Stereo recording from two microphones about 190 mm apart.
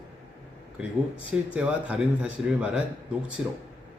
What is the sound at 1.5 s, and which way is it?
A man's voice, 5° right (ahead or behind).